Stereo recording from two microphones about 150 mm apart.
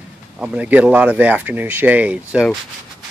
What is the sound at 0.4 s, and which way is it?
Speech, 10° right (ahead or behind).